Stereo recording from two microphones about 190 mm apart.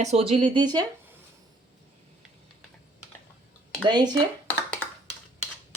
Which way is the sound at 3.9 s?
20° right (ahead or behind).